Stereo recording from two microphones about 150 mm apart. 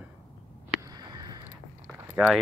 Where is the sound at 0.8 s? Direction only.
25° right (ahead or behind).